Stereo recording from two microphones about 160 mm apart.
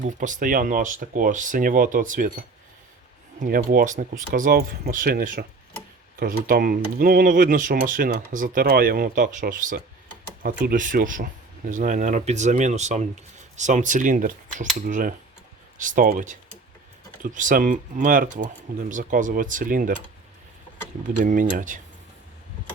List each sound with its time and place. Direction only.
0.0 s speech: 55° right (ahead or behind)
3.4 s speech: 65° right (ahead or behind)
21.2 s speech: 55° right (ahead or behind)